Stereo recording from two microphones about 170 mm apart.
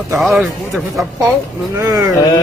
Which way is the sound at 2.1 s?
20° left (ahead or behind).